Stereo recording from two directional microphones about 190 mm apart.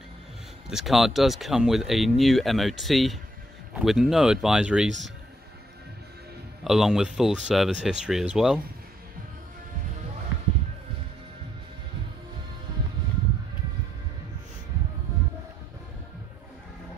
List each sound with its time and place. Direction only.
0.7 s speech: centre (ahead or behind)
6.6 s speech: centre (ahead or behind)